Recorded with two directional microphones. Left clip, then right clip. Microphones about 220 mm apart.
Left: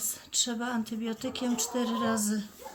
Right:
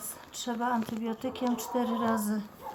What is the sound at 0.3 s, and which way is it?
Speech, 30° left (ahead or behind).